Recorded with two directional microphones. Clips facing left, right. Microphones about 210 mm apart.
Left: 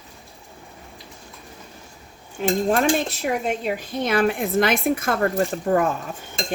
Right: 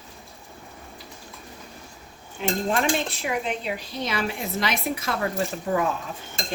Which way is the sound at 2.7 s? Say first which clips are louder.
Left 3 dB; 45° left (ahead or behind).